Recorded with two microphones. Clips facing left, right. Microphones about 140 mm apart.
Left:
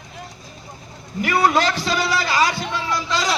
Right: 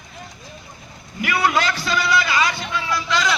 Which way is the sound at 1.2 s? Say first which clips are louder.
Left 2 dB; 40° left (ahead or behind).